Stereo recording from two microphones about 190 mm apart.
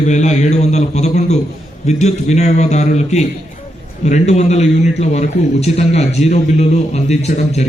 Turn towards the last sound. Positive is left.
turn(degrees=35)  # may be behind; listen again after turning